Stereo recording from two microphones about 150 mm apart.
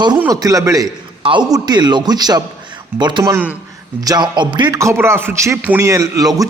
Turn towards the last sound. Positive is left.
turn(degrees=-25)  # may be behind; listen again after turning